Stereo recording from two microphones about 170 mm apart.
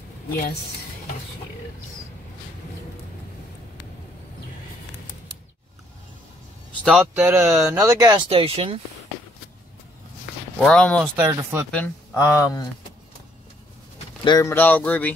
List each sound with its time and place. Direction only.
0.3 s a woman's voice: 65° left (ahead or behind)
6.8 s speech: centre (ahead or behind)
7.2 s speech: 15° right (ahead or behind)
8.3 s speech: 35° right (ahead or behind)
10.7 s speech: 5° left (ahead or behind)
11.1 s speech: 15° right (ahead or behind)
11.7 s speech: 5° left (ahead or behind)
12.2 s speech: 20° left (ahead or behind)
14.2 s speech: 25° left (ahead or behind)
14.5 s speech: 10° left (ahead or behind)